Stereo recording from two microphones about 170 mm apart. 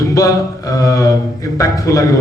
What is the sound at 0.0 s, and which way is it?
Speech, 20° left (ahead or behind).